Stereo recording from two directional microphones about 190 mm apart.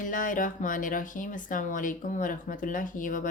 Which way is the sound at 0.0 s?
45° left (ahead or behind).